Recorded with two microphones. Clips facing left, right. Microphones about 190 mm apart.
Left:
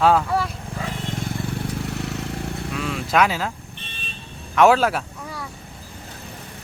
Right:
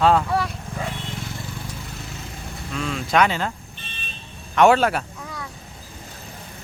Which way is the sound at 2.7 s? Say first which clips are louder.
Right 1 dB; 5° left (ahead or behind).